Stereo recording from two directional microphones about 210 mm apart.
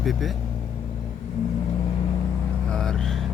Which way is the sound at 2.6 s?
5° left (ahead or behind).